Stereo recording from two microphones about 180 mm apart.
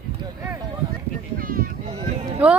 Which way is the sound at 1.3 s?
55° right (ahead or behind).